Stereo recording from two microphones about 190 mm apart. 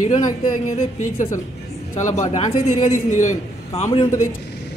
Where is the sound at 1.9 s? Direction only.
40° left (ahead or behind).